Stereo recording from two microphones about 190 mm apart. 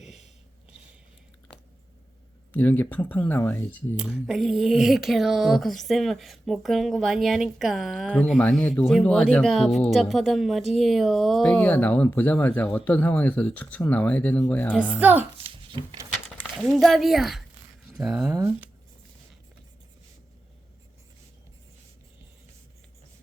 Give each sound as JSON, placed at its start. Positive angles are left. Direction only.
{"t": 2.5, "sound": "speech", "side_deg": 10}
{"t": 3.9, "sound": "speech", "side_deg": -5}
{"t": 14.7, "sound": "a child's voice", "side_deg": -5}
{"t": 15.4, "sound": "a sound", "side_deg": -25}
{"t": 16.4, "sound": "speech", "side_deg": 5}
{"t": 18.3, "sound": "a child's voice", "side_deg": -15}